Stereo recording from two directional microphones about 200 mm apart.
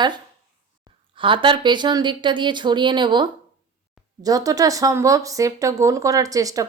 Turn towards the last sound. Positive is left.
turn(degrees=-15)  # may be behind; listen again after turning